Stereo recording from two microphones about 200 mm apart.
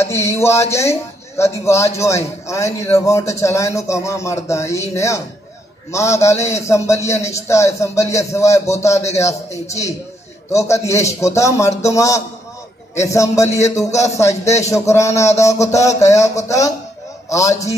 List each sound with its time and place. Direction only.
0.0 s a sound: 15° left (ahead or behind)
0.4 s a man's voice: 15° left (ahead or behind)
10.7 s a man's voice: 15° left (ahead or behind)